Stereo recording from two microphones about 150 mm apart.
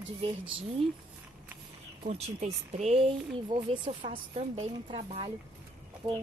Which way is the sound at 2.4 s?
50° right (ahead or behind).